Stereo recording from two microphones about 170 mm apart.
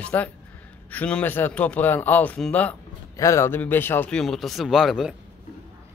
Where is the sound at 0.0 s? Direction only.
10° left (ahead or behind).